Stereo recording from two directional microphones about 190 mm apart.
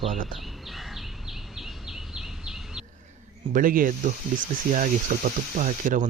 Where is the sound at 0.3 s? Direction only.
Centre (ahead or behind).